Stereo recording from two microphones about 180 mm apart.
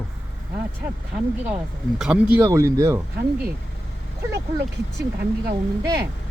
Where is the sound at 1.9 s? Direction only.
5° right (ahead or behind).